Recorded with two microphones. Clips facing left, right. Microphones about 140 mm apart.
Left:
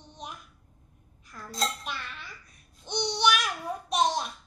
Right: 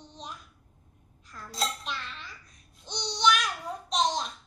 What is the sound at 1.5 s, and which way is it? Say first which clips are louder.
Dishes: left 1 dB; 5° left (ahead or behind).